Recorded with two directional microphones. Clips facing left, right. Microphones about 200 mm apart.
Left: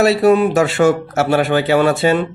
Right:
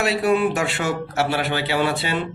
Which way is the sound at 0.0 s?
40° left (ahead or behind).